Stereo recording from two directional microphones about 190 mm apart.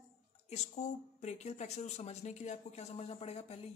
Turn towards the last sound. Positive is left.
turn(degrees=30)  # may be behind; listen again after turning